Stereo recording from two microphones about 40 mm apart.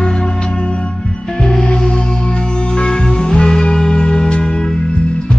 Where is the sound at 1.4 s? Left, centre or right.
Centre.